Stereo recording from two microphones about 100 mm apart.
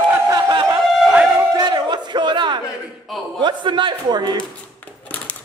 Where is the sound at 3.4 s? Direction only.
50° right (ahead or behind).